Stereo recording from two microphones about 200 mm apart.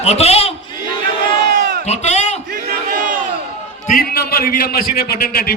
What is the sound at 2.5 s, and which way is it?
Battle cry, 40° right (ahead or behind).